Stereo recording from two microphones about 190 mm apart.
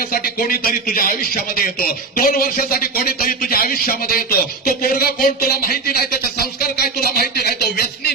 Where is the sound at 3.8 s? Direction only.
50° left (ahead or behind).